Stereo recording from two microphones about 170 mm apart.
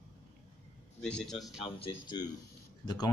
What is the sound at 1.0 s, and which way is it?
Speech, 5° left (ahead or behind).